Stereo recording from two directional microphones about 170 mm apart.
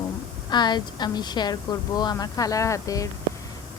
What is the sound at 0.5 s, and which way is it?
A woman's voice, 25° left (ahead or behind).